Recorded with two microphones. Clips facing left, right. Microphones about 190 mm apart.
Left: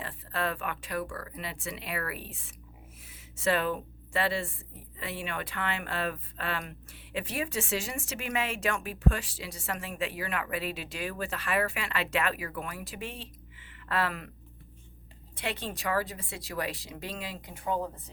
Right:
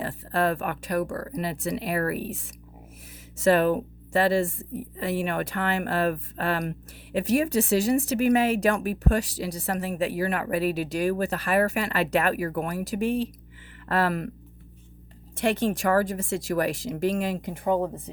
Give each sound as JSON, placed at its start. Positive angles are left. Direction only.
{"t": 0.0, "sound": "speech", "side_deg": -40}
{"t": 3.3, "sound": "speech", "side_deg": -40}
{"t": 15.4, "sound": "speech", "side_deg": -45}